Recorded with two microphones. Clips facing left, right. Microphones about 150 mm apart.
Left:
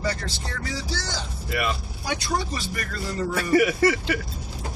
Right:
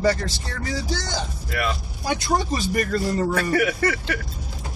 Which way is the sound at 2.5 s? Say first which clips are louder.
Right 9 dB; 45° right (ahead or behind).